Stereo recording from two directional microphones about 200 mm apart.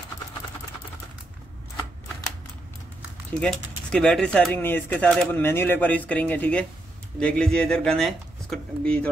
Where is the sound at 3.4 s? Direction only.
5° left (ahead or behind).